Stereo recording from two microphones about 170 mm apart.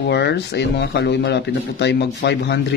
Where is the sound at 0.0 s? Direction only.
80° left.